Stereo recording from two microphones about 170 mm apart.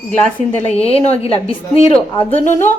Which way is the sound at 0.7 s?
35° left (ahead or behind).